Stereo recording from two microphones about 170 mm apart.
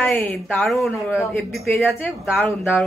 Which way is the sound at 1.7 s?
10° left (ahead or behind).